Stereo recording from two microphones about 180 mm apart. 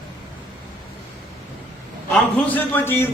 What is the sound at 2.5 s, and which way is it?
Speech, 10° left (ahead or behind).